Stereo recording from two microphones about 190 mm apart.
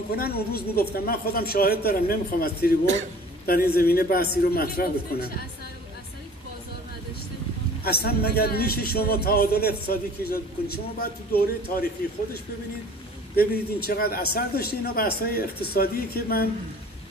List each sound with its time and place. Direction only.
0.1 s a man's voice: 55° left (ahead or behind)
7.8 s a man's voice: 55° left (ahead or behind)
13.4 s a man's voice: 55° left (ahead or behind)